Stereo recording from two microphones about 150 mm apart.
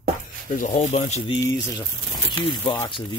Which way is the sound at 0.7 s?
50° left (ahead or behind).